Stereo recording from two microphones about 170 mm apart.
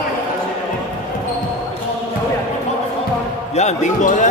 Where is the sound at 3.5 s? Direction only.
45° left (ahead or behind).